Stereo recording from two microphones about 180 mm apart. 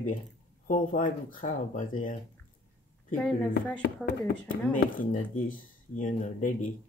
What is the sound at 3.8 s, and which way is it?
Speech, 55° left (ahead or behind).